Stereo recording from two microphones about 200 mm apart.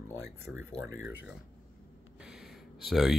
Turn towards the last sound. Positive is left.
turn(degrees=0)  # may be behind; listen again after turning